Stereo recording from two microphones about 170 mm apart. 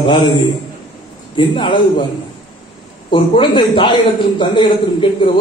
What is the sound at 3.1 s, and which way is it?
A man's voice, 30° left (ahead or behind).